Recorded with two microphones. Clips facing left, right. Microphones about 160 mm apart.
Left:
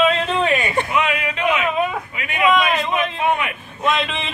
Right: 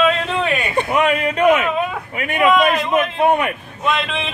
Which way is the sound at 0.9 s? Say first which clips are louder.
Right 4 dB; 45° right (ahead or behind).